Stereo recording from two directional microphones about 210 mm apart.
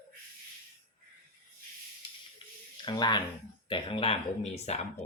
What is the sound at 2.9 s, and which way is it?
Speech, 20° left (ahead or behind).